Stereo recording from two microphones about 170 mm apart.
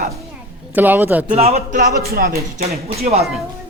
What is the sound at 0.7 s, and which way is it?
Speech, 10° right (ahead or behind).